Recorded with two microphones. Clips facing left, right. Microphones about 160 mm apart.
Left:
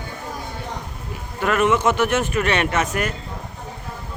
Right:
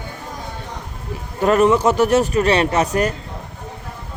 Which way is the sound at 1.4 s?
35° right (ahead or behind).